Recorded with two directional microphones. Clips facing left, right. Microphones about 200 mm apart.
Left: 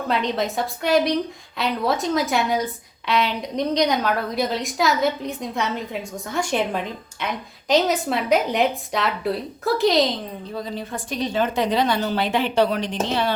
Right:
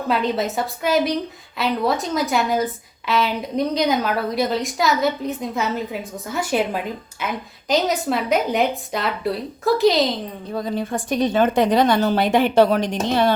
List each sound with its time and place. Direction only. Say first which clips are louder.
0.1 s a woman's voice: right 2 dB; 5° right (ahead or behind)
10.5 s a woman's voice: right 7 dB; 50° right (ahead or behind)